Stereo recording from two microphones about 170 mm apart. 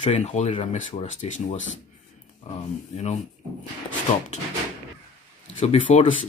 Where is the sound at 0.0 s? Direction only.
40° left (ahead or behind).